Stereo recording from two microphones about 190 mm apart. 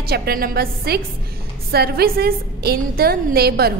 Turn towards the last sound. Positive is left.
turn(degrees=-55)  # may be behind; listen again after turning